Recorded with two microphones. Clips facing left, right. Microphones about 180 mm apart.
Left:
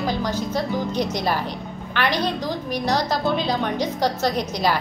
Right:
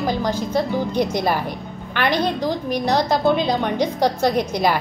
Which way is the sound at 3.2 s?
15° right (ahead or behind).